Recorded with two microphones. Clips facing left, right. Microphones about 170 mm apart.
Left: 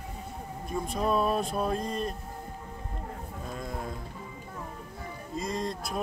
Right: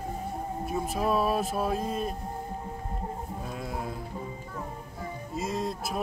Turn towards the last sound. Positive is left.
turn(degrees=-5)  # may be behind; listen again after turning